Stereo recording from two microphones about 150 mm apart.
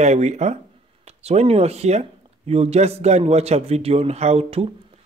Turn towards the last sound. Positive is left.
turn(degrees=-40)  # may be behind; listen again after turning